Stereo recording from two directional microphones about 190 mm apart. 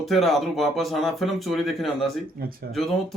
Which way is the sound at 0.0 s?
Centre (ahead or behind).